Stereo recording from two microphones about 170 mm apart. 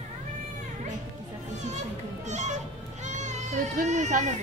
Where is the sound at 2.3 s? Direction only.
45° right (ahead or behind).